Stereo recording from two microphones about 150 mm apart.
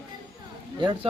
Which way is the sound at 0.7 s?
30° right (ahead or behind).